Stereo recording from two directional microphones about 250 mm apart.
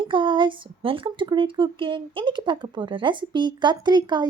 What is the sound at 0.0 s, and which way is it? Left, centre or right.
A woman's voice, centre.